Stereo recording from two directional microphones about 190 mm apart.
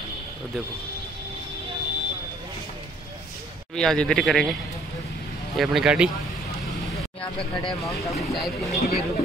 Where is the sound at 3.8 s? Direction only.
5° left (ahead or behind).